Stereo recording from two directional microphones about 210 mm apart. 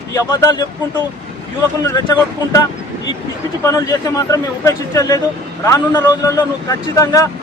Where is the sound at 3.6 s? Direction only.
15° left (ahead or behind).